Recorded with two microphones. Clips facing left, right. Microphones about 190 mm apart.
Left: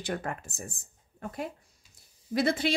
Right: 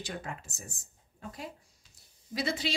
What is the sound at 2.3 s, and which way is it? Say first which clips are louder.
Speech: left 6 dB; 55° left (ahead or behind).